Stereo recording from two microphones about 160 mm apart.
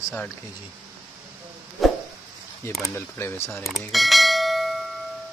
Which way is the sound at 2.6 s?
15° left (ahead or behind).